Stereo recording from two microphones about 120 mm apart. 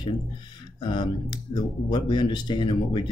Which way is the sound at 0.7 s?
40° left (ahead or behind).